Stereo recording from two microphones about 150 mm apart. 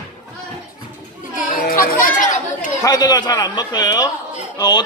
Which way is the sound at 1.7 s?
70° left (ahead or behind).